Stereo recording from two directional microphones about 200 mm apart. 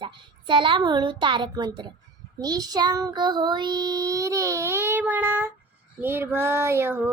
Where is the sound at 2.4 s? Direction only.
20° right (ahead or behind).